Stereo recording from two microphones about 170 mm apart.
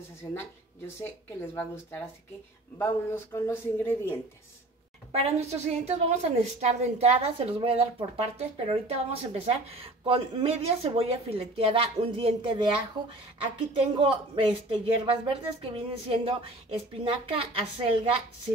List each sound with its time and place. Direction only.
1.0 s speech: 10° left (ahead or behind)
5.2 s a woman's voice: 40° right (ahead or behind)
13.7 s a woman's voice: 30° right (ahead or behind)